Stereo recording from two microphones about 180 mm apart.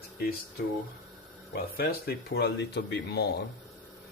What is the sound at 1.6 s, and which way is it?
Speech, 60° left (ahead or behind).